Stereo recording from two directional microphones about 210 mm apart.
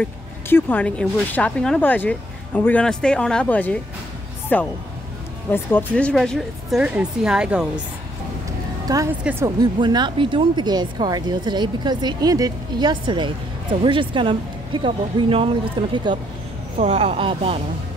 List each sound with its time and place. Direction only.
0.5 s a woman's voice: 10° left (ahead or behind)
8.8 s a woman's voice: 15° right (ahead or behind)